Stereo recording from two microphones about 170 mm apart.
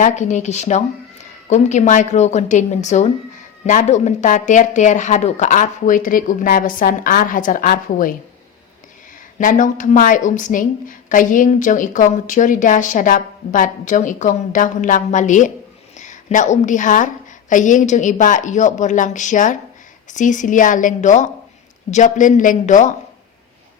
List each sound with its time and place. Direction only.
0.0 s a woman's voice: 45° left (ahead or behind)
9.4 s a woman's voice: 50° left (ahead or behind)